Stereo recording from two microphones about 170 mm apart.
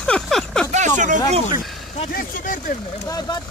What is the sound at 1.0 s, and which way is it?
Speech, 45° right (ahead or behind).